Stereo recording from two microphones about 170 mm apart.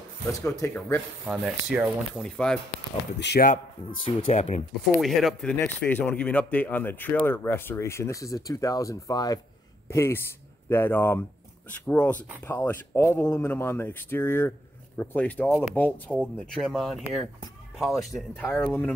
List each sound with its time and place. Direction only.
0.3 s speech: 20° left (ahead or behind)
1.2 s speech: 5° right (ahead or behind)
3.2 s speech: 85° left
4.2 s speech: 35° left (ahead or behind)
4.9 s speech: centre (ahead or behind)